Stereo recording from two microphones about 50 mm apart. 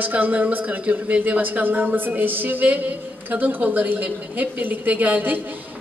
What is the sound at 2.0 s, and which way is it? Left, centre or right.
A man's voice, right.